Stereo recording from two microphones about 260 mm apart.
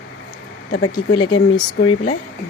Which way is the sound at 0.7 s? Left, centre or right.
Left.